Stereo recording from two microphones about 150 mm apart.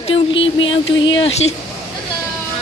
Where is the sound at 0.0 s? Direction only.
35° left (ahead or behind).